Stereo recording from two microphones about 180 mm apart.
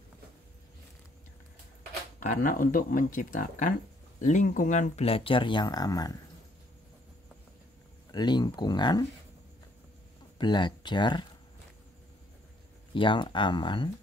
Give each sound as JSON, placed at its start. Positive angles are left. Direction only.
{"t": 2.2, "sound": "speech", "side_deg": 50}
{"t": 8.1, "sound": "speech", "side_deg": 25}
{"t": 10.3, "sound": "speech", "side_deg": 25}
{"t": 12.9, "sound": "speech", "side_deg": 25}